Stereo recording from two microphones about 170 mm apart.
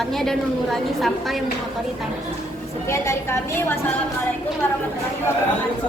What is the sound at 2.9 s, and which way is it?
Speech, 15° left (ahead or behind).